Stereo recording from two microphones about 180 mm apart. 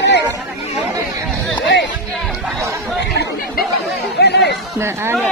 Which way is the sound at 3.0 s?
65° left (ahead or behind).